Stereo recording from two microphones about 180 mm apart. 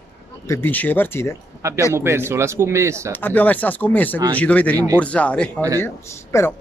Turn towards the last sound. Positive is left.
turn(degrees=15)  # may be behind; listen again after turning